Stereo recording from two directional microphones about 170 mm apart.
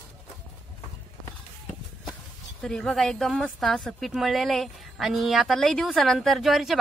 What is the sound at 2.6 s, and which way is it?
A woman's voice, 5° left (ahead or behind).